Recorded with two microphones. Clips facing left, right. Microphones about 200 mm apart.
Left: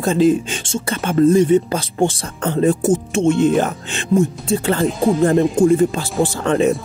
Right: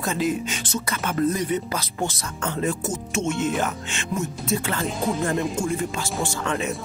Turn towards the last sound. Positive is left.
turn(degrees=35)  # may be behind; listen again after turning